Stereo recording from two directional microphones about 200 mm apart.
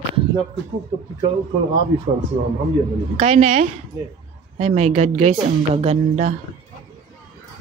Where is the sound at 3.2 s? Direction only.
35° right (ahead or behind).